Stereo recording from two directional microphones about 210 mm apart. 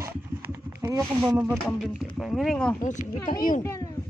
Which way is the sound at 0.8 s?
15° right (ahead or behind).